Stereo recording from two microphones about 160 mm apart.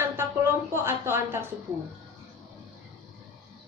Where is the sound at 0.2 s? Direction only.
15° right (ahead or behind).